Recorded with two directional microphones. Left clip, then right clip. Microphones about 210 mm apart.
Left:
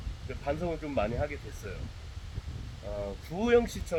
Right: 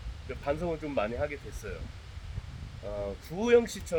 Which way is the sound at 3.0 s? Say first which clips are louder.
Even; centre (ahead or behind).